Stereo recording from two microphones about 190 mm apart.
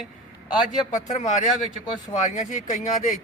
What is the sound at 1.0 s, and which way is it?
A man's voice, 40° left (ahead or behind).